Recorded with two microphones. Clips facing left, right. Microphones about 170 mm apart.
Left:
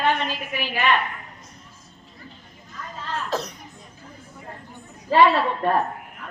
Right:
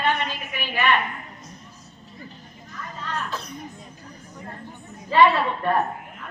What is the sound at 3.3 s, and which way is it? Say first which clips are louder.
Speech: left 6 dB; 80° left.